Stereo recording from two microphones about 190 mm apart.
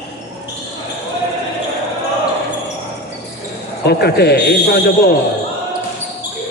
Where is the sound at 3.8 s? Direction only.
60° left (ahead or behind).